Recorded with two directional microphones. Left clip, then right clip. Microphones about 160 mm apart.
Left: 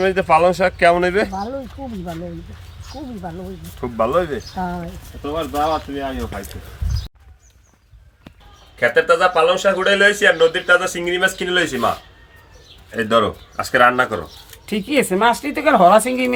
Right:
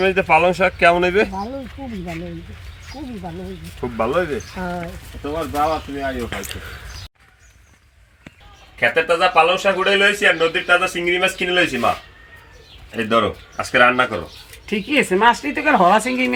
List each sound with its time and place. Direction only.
0.0 s speech: 20° left (ahead or behind)
3.8 s speech: 20° left (ahead or behind)
4.6 s speech: 90° left
5.3 s speech: 10° left (ahead or behind)
8.8 s a man's voice: 5° left (ahead or behind)
12.9 s speech: 10° left (ahead or behind)
14.7 s speech: 65° left (ahead or behind)